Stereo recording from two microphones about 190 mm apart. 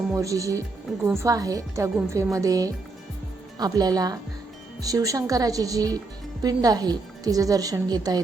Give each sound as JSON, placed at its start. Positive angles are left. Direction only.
{"t": 0.1, "sound": "a woman's voice", "side_deg": -15}